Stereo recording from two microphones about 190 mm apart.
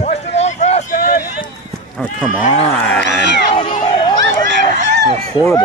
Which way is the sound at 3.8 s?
25° left (ahead or behind).